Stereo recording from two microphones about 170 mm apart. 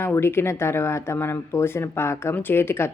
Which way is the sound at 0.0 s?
15° left (ahead or behind).